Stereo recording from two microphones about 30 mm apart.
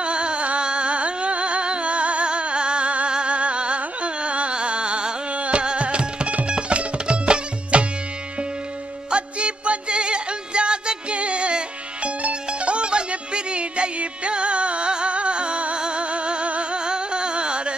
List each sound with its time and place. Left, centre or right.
0.0 s music: right
3.1 s carnatic music: right
6.4 s music: right
9.1 s music: right
16.7 s music: right